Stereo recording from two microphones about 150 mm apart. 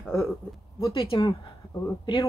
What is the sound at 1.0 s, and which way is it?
Speech, 40° left (ahead or behind).